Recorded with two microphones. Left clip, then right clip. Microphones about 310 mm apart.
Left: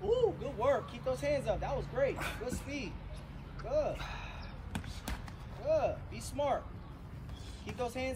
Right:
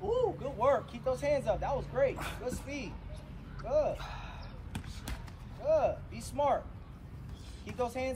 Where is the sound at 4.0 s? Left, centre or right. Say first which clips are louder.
Left 1 dB; centre.